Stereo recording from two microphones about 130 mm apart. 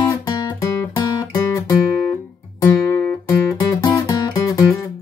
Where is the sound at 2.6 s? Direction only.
30° left (ahead or behind).